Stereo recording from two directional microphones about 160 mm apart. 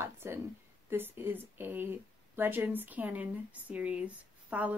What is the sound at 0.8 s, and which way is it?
Speech, 15° right (ahead or behind).